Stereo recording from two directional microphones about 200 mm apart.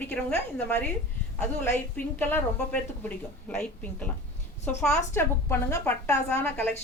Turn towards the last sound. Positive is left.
turn(degrees=10)  # may be behind; listen again after turning